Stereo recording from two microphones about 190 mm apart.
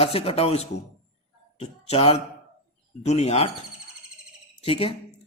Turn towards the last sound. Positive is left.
turn(degrees=30)  # may be behind; listen again after turning